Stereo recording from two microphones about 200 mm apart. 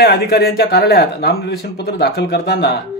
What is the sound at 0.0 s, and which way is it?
Speech, 50° left (ahead or behind).